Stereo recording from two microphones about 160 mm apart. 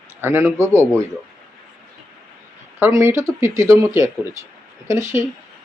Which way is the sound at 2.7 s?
15° right (ahead or behind).